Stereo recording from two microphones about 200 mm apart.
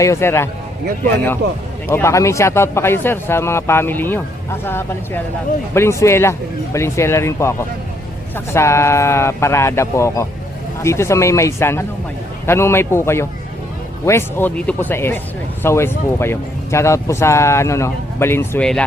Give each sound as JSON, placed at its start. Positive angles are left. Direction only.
{"t": 0.0, "sound": "speech", "side_deg": 15}
{"t": 8.5, "sound": "speech", "side_deg": 15}